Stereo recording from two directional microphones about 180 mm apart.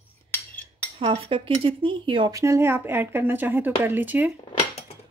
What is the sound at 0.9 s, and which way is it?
Speech, 30° right (ahead or behind).